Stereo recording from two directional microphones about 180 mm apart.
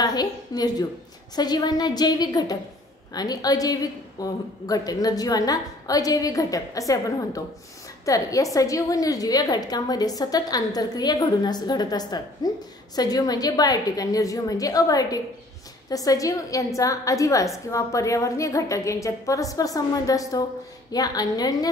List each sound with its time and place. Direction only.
0.0 s a woman's voice: 20° left (ahead or behind)